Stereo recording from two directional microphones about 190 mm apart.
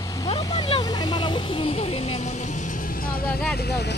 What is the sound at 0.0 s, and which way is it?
Vehicle, 20° left (ahead or behind).